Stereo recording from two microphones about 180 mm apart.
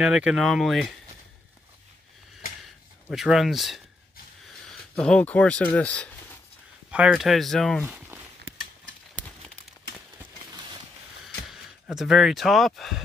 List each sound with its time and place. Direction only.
0.0 s speech: 5° right (ahead or behind)
3.1 s speech: centre (ahead or behind)
4.9 s speech: 5° left (ahead or behind)
6.9 s speech: 5° right (ahead or behind)
7.8 s a sound: 10° right (ahead or behind)
11.9 s speech: centre (ahead or behind)